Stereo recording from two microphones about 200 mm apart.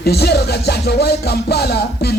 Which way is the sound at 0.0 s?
55° left (ahead or behind).